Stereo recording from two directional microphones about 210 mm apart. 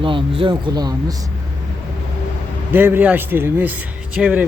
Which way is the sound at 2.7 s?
10° right (ahead or behind).